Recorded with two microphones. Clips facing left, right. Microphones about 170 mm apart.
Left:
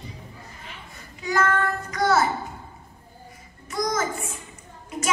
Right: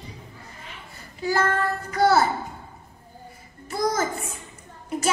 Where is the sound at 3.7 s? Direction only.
30° right (ahead or behind).